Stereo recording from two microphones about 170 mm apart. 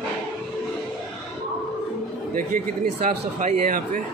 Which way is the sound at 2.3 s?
55° right (ahead or behind).